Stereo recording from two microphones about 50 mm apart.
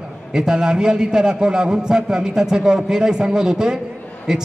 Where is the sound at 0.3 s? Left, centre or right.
Centre.